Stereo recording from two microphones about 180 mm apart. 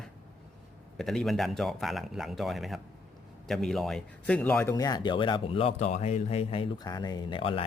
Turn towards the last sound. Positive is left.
turn(degrees=30)  # may be behind; listen again after turning